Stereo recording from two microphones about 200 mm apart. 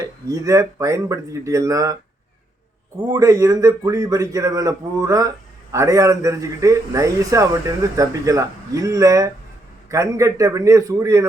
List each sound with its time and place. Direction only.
0.0 s a man's voice: 15° right (ahead or behind)
3.1 s a man's voice: 15° right (ahead or behind)